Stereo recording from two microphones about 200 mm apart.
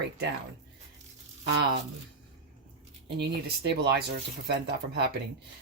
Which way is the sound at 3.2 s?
55° right (ahead or behind).